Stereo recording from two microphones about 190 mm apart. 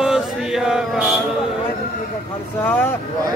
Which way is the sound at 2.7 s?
10° left (ahead or behind).